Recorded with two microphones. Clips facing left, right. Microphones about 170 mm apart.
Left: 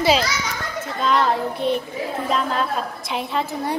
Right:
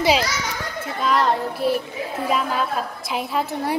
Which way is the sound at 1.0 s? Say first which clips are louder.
Even; centre (ahead or behind).